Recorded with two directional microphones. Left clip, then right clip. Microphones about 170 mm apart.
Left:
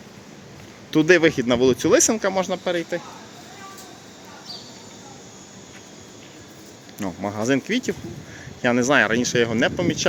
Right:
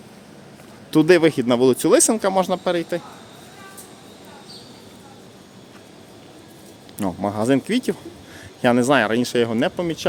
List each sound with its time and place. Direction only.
0.9 s speech: 20° right (ahead or behind)
7.0 s speech: 20° right (ahead or behind)